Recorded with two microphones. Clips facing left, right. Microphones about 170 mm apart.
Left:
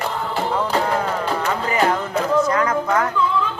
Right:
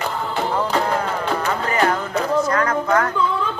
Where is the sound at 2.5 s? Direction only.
15° left (ahead or behind).